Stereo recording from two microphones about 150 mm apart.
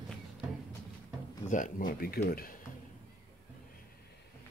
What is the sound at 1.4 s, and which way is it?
Speech, 60° left (ahead or behind).